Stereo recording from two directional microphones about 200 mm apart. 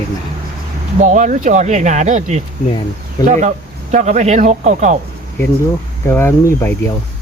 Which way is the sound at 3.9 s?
35° right (ahead or behind).